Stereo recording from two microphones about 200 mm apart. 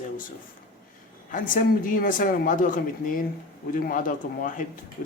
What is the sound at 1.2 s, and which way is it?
Speech, 40° left (ahead or behind).